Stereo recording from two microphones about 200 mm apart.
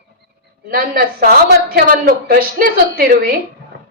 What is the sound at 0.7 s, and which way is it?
A woman's voice, 45° right (ahead or behind).